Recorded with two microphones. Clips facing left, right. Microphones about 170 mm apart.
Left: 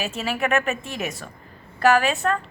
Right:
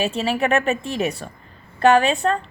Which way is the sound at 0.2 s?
30° right (ahead or behind).